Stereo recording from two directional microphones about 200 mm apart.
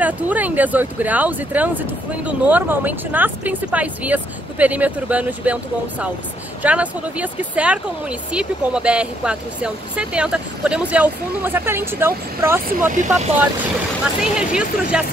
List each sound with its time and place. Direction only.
0.0 s speech: 10° right (ahead or behind)
12.8 s speech: 40° right (ahead or behind)
14.2 s speech: 5° right (ahead or behind)